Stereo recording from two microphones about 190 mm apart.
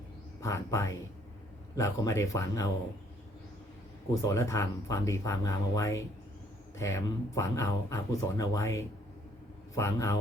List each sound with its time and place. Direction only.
0.4 s speech: 15° left (ahead or behind)
4.1 s speech: 15° left (ahead or behind)